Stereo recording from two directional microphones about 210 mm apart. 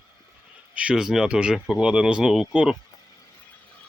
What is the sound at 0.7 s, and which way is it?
Speech, 5° right (ahead or behind).